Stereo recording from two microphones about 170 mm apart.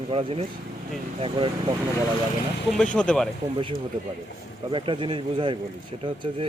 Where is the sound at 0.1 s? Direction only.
30° right (ahead or behind).